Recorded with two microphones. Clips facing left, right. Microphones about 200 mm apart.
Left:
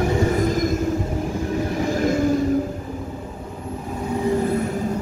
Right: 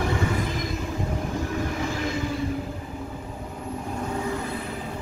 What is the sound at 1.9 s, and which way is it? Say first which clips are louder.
Train: left 9 dB; 45° left (ahead or behind).